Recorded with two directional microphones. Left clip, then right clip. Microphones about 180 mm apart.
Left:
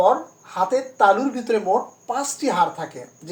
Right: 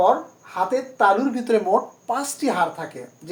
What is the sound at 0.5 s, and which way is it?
Speech, 20° right (ahead or behind).